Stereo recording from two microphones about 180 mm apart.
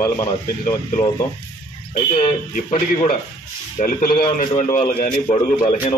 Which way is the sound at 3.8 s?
45° left (ahead or behind).